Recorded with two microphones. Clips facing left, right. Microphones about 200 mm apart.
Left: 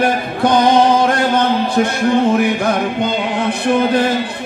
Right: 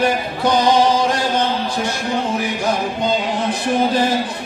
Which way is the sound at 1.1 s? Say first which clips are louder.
Left 4 dB; 55° left (ahead or behind).